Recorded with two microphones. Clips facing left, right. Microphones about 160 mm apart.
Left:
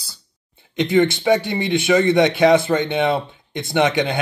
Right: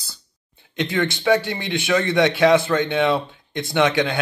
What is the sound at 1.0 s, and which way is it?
A man's voice, 55° left (ahead or behind).